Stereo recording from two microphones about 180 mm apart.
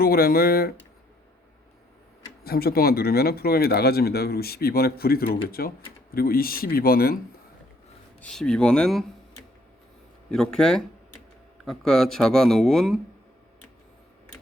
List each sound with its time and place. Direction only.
0.0 s speech: 55° left (ahead or behind)
2.4 s speech: 60° left (ahead or behind)
8.2 s speech: 5° left (ahead or behind)
10.3 s speech: 5° left (ahead or behind)